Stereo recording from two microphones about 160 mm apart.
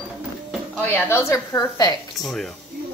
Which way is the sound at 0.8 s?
15° left (ahead or behind).